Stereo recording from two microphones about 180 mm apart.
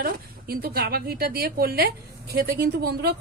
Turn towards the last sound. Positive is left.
turn(degrees=-60)  # may be behind; listen again after turning